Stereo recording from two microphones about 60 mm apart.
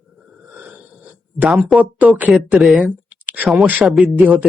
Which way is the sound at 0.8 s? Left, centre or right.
Right.